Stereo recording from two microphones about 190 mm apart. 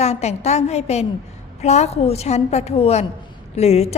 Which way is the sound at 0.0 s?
35° left (ahead or behind).